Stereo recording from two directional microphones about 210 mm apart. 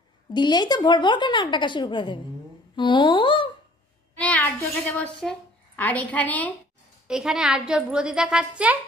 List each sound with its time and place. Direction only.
0.3 s a woman's voice: 20° left (ahead or behind)
4.2 s a child's voice: 5° left (ahead or behind)